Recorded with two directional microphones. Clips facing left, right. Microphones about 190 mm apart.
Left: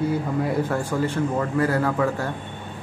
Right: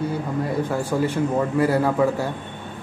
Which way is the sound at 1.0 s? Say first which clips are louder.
Right 2 dB; 10° right (ahead or behind).